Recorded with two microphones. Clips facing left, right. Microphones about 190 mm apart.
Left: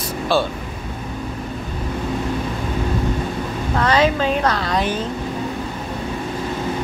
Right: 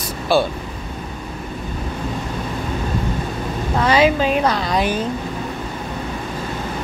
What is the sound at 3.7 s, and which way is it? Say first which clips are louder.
A woman's voice: right 2 dB; 10° right (ahead or behind).